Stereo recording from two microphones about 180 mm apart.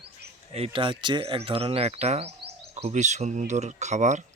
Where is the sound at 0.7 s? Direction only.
25° right (ahead or behind).